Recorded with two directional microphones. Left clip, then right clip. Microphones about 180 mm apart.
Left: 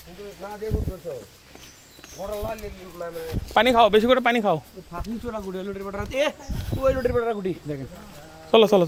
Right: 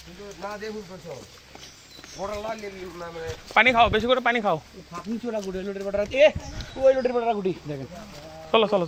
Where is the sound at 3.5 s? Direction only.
65° left (ahead or behind).